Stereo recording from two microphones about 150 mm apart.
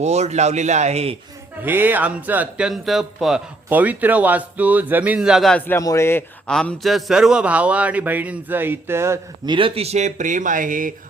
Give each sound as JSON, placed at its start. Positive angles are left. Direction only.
{"t": 0.0, "sound": "speech", "side_deg": -50}
{"t": 1.6, "sound": "a man's voice", "side_deg": -15}
{"t": 6.5, "sound": "speech", "side_deg": 5}
{"t": 9.5, "sound": "speech", "side_deg": -35}